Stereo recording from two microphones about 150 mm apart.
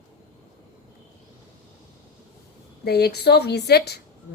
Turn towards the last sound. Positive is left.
turn(degrees=90)